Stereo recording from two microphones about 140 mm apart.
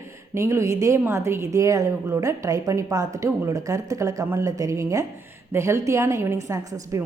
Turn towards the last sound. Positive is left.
turn(degrees=-25)  # may be behind; listen again after turning